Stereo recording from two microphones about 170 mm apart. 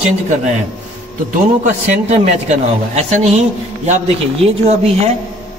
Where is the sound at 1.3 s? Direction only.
50° right (ahead or behind).